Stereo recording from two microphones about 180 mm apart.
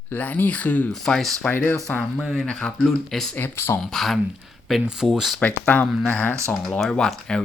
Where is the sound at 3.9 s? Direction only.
Centre (ahead or behind).